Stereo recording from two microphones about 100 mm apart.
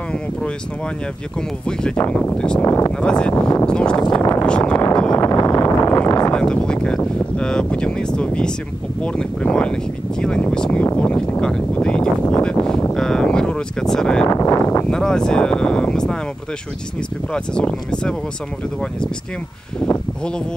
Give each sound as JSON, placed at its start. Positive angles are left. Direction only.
{"t": 2.0, "sound": "speech", "side_deg": 10}
{"t": 2.6, "sound": "speech", "side_deg": 30}
{"t": 3.0, "sound": "speech", "side_deg": 10}
{"t": 5.1, "sound": "a sound", "side_deg": 30}
{"t": 6.3, "sound": "speech", "side_deg": 10}
{"t": 14.3, "sound": "speech", "side_deg": 30}
{"t": 14.9, "sound": "speech", "side_deg": 5}
{"t": 17.3, "sound": "speech", "side_deg": 10}